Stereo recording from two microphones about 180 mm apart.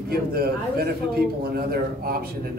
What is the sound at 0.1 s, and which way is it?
A man's voice, 60° right (ahead or behind).